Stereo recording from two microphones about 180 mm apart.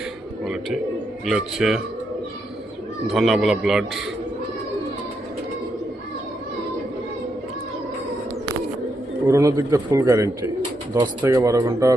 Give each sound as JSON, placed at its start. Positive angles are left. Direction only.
{"t": 0.4, "sound": "a man's voice", "side_deg": 0}
{"t": 3.1, "sound": "a man's voice", "side_deg": 0}
{"t": 9.2, "sound": "a man's voice", "side_deg": -15}